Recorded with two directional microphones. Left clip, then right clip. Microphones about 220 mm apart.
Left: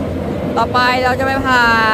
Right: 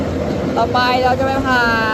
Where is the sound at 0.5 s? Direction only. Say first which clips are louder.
Left 2 dB; 10° left (ahead or behind).